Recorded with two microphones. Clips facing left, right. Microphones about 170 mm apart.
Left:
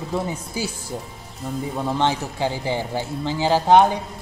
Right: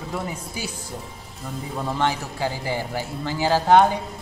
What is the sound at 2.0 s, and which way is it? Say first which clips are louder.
Speech: left 1 dB; 25° left (ahead or behind).